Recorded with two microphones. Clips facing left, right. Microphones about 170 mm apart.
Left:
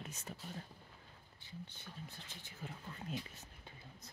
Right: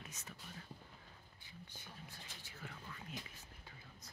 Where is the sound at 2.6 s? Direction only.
20° left (ahead or behind).